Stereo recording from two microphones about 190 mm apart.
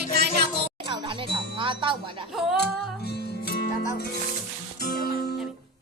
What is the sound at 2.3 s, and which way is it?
Singing, centre (ahead or behind).